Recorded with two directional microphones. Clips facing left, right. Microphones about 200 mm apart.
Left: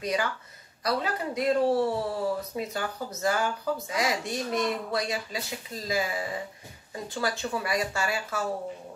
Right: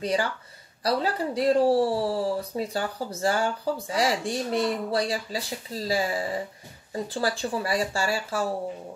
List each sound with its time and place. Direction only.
0.0 s speech: 30° right (ahead or behind)